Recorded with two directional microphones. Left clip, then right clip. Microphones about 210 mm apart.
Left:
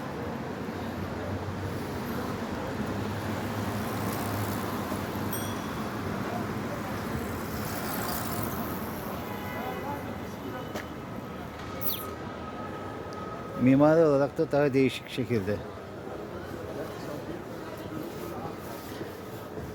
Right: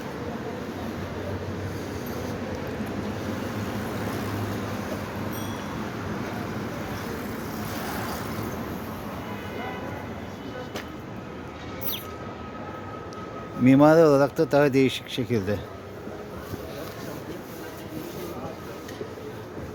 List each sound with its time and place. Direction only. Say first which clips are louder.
13.7 s speech: right 5 dB; 25° right (ahead or behind)